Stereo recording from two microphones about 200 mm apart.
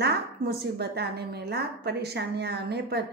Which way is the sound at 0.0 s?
55° right (ahead or behind).